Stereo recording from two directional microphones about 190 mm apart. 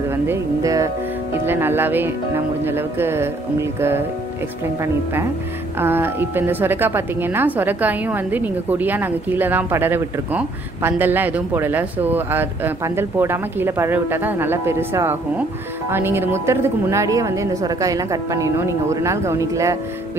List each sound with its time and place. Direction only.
0.1 s a woman's voice: 15° right (ahead or behind)
5.8 s a woman's voice: 10° right (ahead or behind)